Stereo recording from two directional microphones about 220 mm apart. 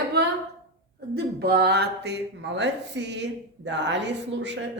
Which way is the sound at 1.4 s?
45° right (ahead or behind).